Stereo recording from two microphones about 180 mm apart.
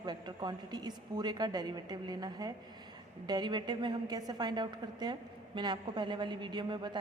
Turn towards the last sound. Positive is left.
turn(degrees=-25)  # may be behind; listen again after turning